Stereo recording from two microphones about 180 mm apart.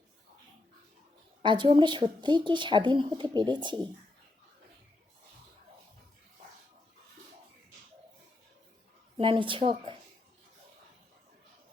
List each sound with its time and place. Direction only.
1.4 s speech: 25° right (ahead or behind)
9.1 s speech: 30° right (ahead or behind)